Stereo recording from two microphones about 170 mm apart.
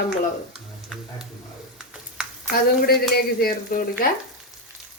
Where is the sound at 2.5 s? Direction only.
60° left (ahead or behind).